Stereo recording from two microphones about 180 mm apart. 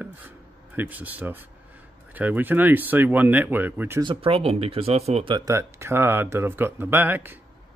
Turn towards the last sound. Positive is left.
turn(degrees=-10)  # may be behind; listen again after turning